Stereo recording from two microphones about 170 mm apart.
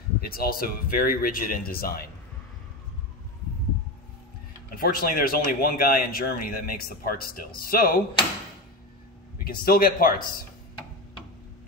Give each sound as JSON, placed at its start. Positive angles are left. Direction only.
{"t": 0.3, "sound": "speech", "side_deg": 60}
{"t": 4.7, "sound": "speech", "side_deg": 60}
{"t": 9.4, "sound": "speech", "side_deg": 60}